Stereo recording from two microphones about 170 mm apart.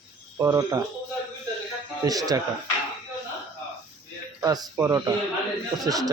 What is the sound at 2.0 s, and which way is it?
Speech, 20° right (ahead or behind).